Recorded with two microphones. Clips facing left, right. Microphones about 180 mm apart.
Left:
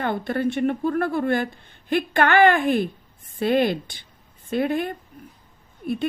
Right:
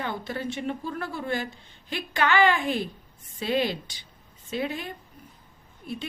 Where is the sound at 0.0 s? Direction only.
55° left (ahead or behind).